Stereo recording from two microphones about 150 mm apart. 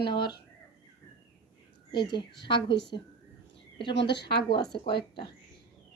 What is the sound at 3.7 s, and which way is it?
Speech, 30° left (ahead or behind).